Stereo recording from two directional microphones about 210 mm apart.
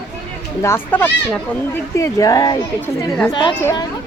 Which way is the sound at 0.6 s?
10° left (ahead or behind).